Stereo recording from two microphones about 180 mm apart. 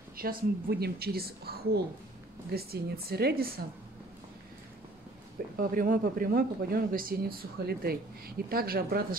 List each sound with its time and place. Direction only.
0.2 s speech: 55° right (ahead or behind)
5.6 s speech: 50° right (ahead or behind)